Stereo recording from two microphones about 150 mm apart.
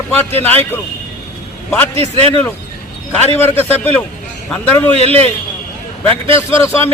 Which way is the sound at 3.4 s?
15° left (ahead or behind).